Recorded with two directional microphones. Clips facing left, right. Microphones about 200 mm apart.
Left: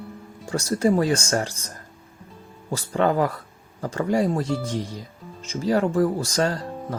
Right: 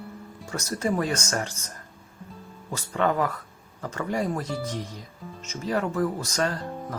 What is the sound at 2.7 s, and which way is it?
Speech, 35° left (ahead or behind).